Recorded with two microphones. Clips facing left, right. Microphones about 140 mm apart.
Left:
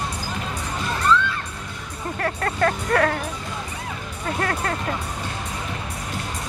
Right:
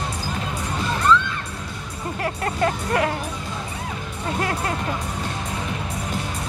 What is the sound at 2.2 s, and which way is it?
Music, 20° right (ahead or behind).